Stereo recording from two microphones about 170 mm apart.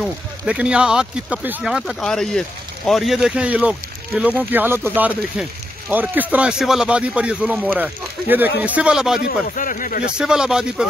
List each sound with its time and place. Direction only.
0.0 s speech: 5° right (ahead or behind)
9.6 s speech: 50° left (ahead or behind)
10.1 s speech: 5° right (ahead or behind)